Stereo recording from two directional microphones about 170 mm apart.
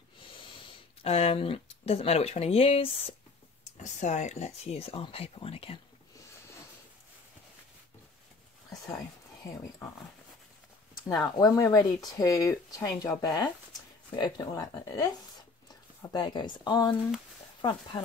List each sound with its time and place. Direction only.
1.0 s speech: 35° left (ahead or behind)
11.3 s speech: 20° left (ahead or behind)